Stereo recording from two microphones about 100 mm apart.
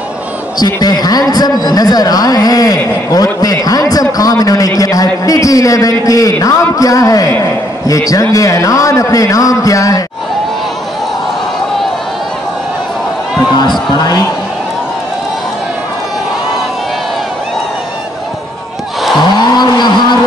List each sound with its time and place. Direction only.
0.6 s a man's voice: 40° left (ahead or behind)
13.4 s a man's voice: 45° left (ahead or behind)
19.3 s wild animals: 45° left (ahead or behind)